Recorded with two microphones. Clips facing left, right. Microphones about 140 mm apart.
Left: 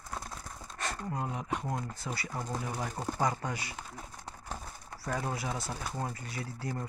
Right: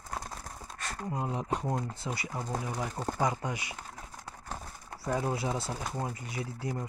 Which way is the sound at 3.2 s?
20° right (ahead or behind).